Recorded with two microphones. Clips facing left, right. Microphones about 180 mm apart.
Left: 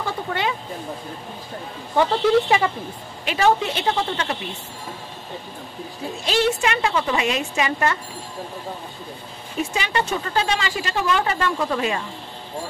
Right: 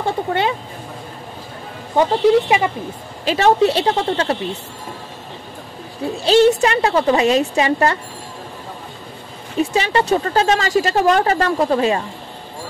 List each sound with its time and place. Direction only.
0.0 s a sound: 30° right (ahead or behind)
2.0 s speech: 20° right (ahead or behind)
3.3 s speech: 35° right (ahead or behind)
6.2 s speech: 30° right (ahead or behind)
9.6 s speech: 35° right (ahead or behind)